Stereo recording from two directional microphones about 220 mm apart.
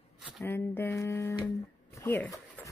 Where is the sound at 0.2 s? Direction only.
5° right (ahead or behind).